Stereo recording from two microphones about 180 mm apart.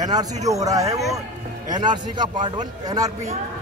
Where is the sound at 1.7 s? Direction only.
25° right (ahead or behind).